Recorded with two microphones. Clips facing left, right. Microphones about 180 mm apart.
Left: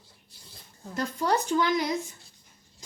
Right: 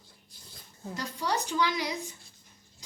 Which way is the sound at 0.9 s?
50° left (ahead or behind).